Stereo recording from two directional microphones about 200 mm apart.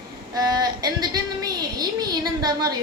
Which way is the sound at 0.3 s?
20° right (ahead or behind).